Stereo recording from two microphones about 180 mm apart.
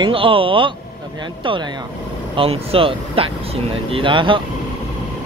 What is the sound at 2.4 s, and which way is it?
Speech, 30° right (ahead or behind).